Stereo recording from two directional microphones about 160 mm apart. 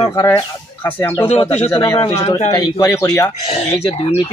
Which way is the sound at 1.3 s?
40° left (ahead or behind).